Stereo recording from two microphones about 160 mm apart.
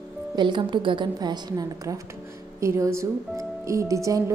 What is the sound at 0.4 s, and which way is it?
A woman's voice, 30° right (ahead or behind).